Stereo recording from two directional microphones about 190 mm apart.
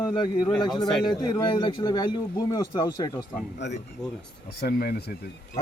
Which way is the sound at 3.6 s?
65° left (ahead or behind).